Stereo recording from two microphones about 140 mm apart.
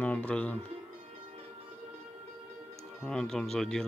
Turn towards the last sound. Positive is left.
turn(degrees=5)  # may be behind; listen again after turning